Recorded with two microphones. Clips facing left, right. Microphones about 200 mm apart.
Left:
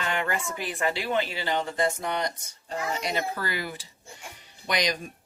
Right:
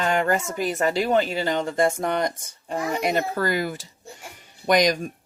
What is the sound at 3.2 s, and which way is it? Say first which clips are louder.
Speech: right 7 dB; 45° right (ahead or behind).